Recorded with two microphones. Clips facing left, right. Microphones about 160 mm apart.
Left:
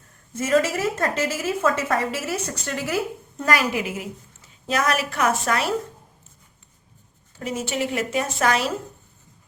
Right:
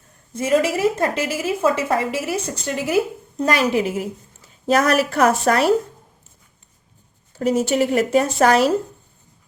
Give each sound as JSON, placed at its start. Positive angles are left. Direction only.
{"t": 0.3, "sound": "a woman's voice", "side_deg": -15}
{"t": 7.3, "sound": "a woman's voice", "side_deg": -40}